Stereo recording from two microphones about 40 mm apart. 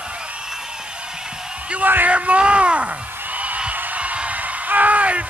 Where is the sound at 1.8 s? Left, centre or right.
Right.